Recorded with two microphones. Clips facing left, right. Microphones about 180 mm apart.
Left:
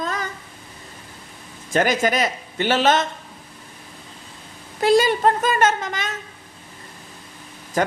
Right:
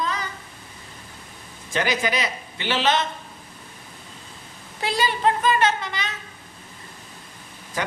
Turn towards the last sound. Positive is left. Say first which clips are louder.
# left 7 dB
turn(degrees=45)  # may be behind; listen again after turning